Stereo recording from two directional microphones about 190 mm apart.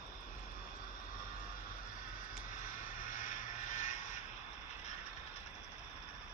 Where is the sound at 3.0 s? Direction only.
40° left (ahead or behind).